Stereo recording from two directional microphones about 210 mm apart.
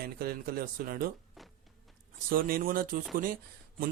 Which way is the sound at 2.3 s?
45° right (ahead or behind).